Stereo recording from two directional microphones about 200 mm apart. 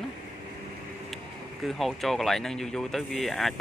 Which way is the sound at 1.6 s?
Centre (ahead or behind).